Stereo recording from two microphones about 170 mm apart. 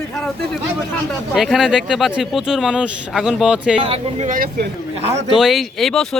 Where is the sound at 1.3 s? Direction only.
Centre (ahead or behind).